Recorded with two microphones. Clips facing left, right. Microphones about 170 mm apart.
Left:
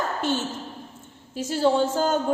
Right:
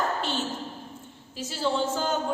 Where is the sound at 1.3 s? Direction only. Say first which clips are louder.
Left 6 dB; 50° left (ahead or behind).